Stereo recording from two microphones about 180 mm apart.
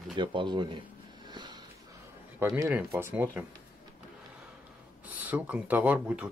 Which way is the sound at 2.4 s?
15° right (ahead or behind).